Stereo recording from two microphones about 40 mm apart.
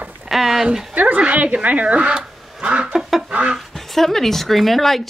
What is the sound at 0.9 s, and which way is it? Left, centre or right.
Speech, right.